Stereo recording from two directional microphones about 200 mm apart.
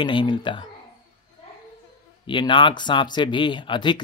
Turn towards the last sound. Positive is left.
turn(degrees=25)  # may be behind; listen again after turning